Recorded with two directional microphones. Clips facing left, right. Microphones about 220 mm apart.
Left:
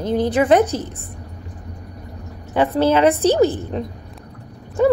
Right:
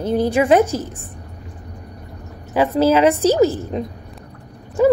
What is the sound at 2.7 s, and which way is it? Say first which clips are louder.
A woman's voice: right 1 dB; 10° right (ahead or behind).